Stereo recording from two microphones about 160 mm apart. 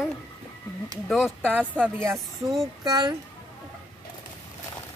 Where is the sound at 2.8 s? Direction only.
25° right (ahead or behind).